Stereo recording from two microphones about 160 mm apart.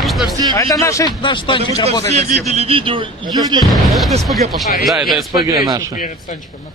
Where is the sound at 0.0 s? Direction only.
Centre (ahead or behind).